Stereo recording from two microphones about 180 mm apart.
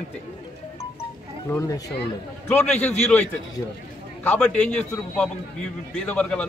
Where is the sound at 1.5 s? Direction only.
15° left (ahead or behind).